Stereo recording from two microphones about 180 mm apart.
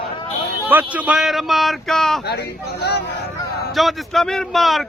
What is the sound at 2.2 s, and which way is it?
Speech, 65° left (ahead or behind).